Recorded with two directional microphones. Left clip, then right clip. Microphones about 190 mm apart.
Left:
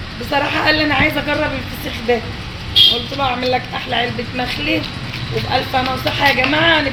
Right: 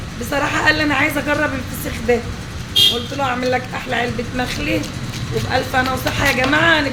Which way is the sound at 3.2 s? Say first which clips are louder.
Left 1 dB; 10° left (ahead or behind).